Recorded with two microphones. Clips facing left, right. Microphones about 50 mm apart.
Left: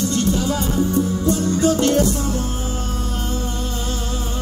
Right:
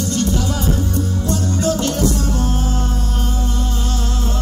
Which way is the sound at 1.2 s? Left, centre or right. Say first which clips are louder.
Left 1 dB; left.